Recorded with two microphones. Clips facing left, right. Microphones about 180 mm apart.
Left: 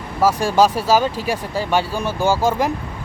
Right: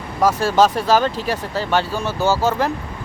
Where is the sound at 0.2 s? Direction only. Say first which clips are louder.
Even; 10° left (ahead or behind).